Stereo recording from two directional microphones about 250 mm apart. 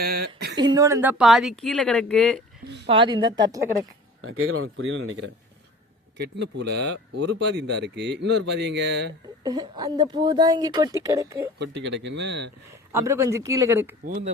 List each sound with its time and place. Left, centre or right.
0.0 s a sound: right
0.5 s speech: centre
1.2 s speech: centre
2.6 s a sound: right
2.9 s a woman's voice: centre
4.2 s speech: right
9.4 s a woman's voice: centre
11.6 s speech: right
12.9 s a woman's voice: centre
14.0 s speech: right